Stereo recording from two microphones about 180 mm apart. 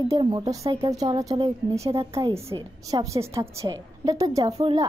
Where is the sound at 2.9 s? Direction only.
20° right (ahead or behind).